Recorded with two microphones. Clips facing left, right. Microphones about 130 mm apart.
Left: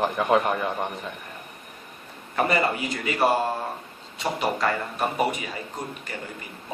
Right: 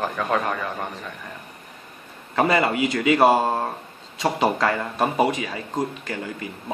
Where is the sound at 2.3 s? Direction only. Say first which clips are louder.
Right 3 dB; 90° right.